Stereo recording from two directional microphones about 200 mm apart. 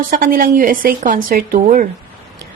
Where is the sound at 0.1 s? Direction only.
45° right (ahead or behind).